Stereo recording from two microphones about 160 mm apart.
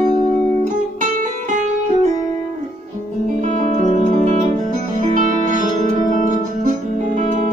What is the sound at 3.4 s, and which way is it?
Music, 50° right (ahead or behind).